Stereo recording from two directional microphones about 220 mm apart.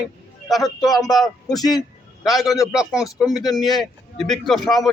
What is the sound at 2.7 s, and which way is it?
A man's voice, 5° right (ahead or behind).